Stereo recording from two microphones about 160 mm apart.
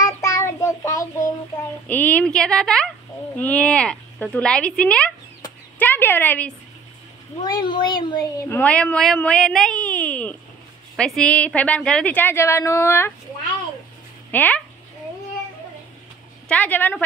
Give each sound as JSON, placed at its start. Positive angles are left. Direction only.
{"t": 0.0, "sound": "child singing", "side_deg": 20}
{"t": 1.9, "sound": "a woman's voice", "side_deg": 10}
{"t": 7.4, "sound": "speech", "side_deg": 30}
{"t": 14.3, "sound": "speech", "side_deg": 10}
{"t": 16.4, "sound": "speech", "side_deg": 10}